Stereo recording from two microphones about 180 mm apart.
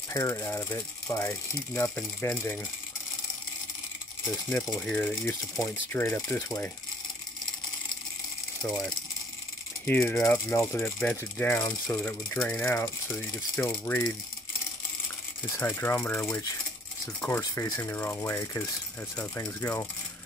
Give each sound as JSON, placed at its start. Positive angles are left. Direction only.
{"t": 0.1, "sound": "speech", "side_deg": 15}
{"t": 4.5, "sound": "speech", "side_deg": 0}
{"t": 9.8, "sound": "speech", "side_deg": 10}
{"t": 15.5, "sound": "speech", "side_deg": 10}